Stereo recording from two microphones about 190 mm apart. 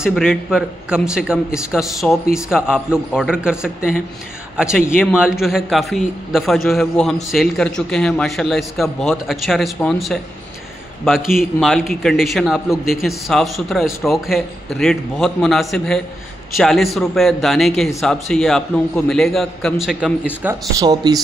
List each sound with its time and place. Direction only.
0.0 s a man's voice: centre (ahead or behind)
20.8 s speech: 20° right (ahead or behind)